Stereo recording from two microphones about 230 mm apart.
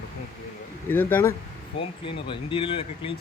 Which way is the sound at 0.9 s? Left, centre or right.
Centre.